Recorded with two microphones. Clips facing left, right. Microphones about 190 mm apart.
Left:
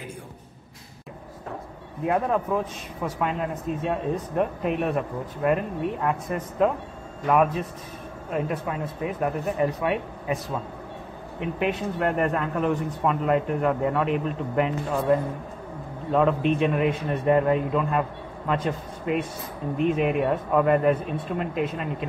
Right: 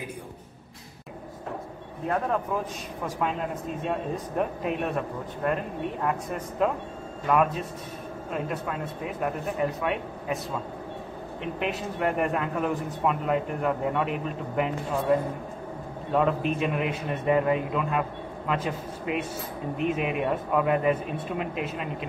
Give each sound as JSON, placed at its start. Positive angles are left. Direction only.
{"t": 2.0, "sound": "a man's voice", "side_deg": 5}